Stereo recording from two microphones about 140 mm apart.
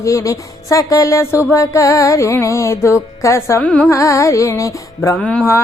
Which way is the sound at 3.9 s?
20° left (ahead or behind).